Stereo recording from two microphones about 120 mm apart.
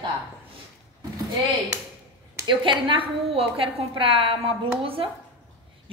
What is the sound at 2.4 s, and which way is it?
A woman's voice, 45° right (ahead or behind).